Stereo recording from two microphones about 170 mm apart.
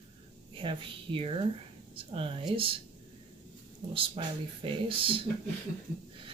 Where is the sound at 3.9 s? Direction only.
30° right (ahead or behind).